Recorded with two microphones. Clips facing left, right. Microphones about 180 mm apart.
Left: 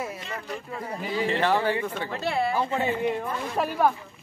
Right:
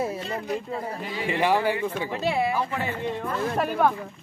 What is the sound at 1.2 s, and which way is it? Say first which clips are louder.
Speech: right 1 dB; 10° right (ahead or behind).